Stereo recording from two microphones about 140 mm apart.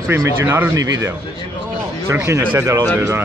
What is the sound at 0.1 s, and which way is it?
Speech, 15° right (ahead or behind).